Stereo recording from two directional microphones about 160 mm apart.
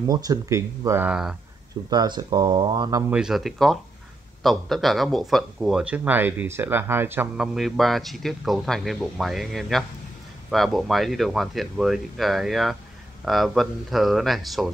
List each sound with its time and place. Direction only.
0.0 s speech: 25° right (ahead or behind); by 1.3 s 5° right (ahead or behind)
1.9 s speech: 25° right (ahead or behind)
3.1 s speech: 5° right (ahead or behind)